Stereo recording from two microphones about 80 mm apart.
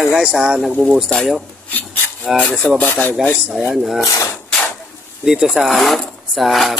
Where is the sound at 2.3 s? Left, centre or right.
Centre.